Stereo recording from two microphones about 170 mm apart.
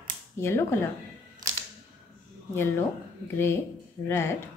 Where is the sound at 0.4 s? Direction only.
15° left (ahead or behind).